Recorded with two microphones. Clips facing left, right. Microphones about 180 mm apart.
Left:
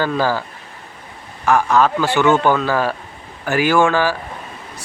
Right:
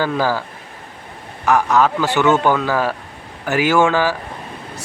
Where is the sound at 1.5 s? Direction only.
15° right (ahead or behind).